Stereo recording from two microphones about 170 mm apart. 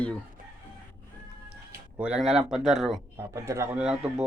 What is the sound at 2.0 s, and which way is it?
Speech, 5° right (ahead or behind).